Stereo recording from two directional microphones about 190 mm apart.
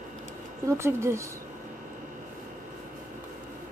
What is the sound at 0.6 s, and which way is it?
Speech, 15° right (ahead or behind).